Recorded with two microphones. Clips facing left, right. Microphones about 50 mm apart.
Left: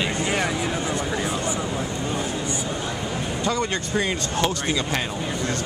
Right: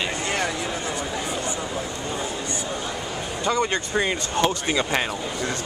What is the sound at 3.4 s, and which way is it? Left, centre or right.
Speech, centre.